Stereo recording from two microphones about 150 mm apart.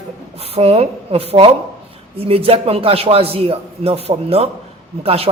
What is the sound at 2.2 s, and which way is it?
A man's voice, 40° right (ahead or behind).